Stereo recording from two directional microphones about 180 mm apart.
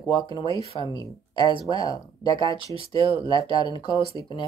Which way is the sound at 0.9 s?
20° left (ahead or behind).